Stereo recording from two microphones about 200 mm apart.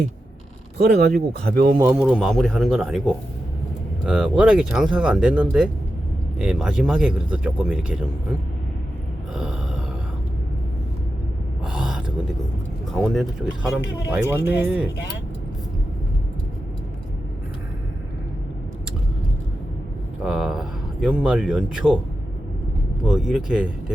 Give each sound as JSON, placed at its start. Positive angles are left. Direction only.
{"t": 0.8, "sound": "speech", "side_deg": -55}
{"t": 1.8, "sound": "speech", "side_deg": -10}
{"t": 4.0, "sound": "speech", "side_deg": -5}
{"t": 9.3, "sound": "gasp", "side_deg": -5}
{"t": 11.6, "sound": "a sound", "side_deg": -5}
{"t": 12.9, "sound": "speech", "side_deg": 0}
{"t": 20.2, "sound": "speech", "side_deg": 0}
{"t": 23.0, "sound": "speech", "side_deg": 0}